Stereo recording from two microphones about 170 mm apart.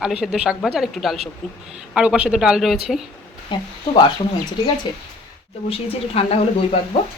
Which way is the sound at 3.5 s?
25° left (ahead or behind).